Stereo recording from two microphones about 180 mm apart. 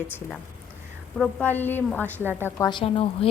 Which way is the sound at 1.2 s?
5° left (ahead or behind).